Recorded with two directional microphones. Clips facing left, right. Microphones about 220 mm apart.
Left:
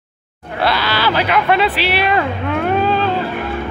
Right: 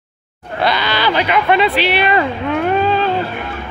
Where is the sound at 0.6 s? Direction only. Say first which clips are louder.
Even; centre (ahead or behind).